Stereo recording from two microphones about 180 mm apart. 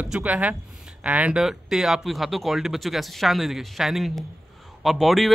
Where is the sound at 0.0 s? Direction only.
5° right (ahead or behind).